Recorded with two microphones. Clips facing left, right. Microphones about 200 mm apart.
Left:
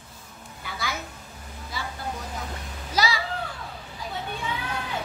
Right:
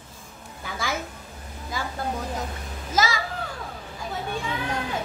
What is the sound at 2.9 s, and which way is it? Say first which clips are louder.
Children playing: right 1 dB; 45° right (ahead or behind).